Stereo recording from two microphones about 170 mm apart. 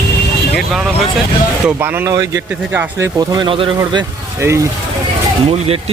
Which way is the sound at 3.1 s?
25° right (ahead or behind).